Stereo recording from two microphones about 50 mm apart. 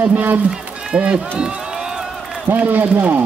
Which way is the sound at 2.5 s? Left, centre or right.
Right.